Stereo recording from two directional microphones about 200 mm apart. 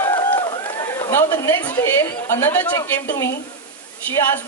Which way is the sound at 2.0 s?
15° left (ahead or behind).